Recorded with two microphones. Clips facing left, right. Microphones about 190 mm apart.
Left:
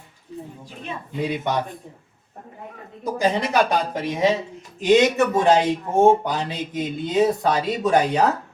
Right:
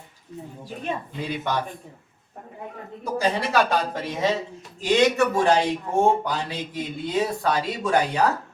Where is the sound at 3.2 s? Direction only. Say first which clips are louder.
Left 2 dB; 20° left (ahead or behind).